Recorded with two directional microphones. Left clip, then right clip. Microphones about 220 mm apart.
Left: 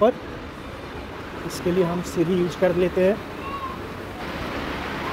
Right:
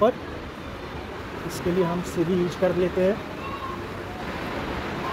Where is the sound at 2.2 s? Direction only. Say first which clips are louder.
Left 3 dB; 20° left (ahead or behind).